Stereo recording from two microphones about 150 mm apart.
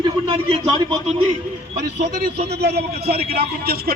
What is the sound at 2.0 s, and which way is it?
A man's voice, 90° right.